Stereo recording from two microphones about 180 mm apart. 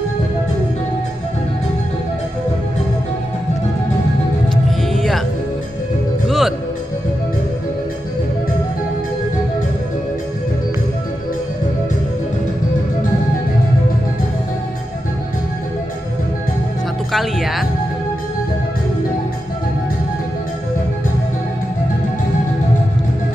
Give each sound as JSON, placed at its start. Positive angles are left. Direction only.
{"t": 4.6, "sound": "music", "side_deg": 0}
{"t": 6.2, "sound": "music", "side_deg": 0}
{"t": 17.1, "sound": "music", "side_deg": 0}